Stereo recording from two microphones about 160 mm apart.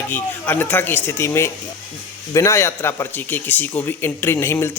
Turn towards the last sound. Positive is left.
turn(degrees=15)  # may be behind; listen again after turning